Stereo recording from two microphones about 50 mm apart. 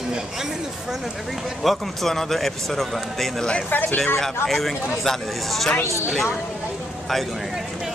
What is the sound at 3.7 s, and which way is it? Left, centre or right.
Speech, left.